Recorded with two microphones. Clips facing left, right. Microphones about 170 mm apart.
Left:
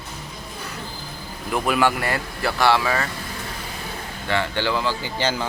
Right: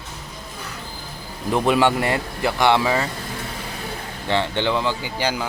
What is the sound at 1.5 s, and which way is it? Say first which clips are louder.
Speech: right 3 dB; 25° right (ahead or behind).